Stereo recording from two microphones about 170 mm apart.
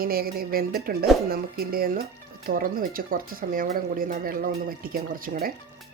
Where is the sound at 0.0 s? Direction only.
60° right (ahead or behind).